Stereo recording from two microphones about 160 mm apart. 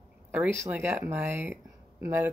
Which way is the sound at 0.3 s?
10° right (ahead or behind).